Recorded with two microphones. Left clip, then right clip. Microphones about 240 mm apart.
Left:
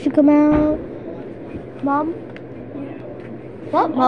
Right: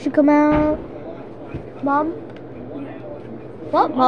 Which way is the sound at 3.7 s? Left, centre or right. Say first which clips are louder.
Right 1 dB; centre.